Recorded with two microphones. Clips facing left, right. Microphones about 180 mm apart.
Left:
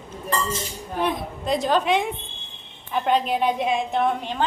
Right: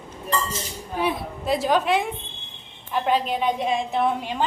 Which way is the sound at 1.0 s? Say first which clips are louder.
Even; 5° right (ahead or behind).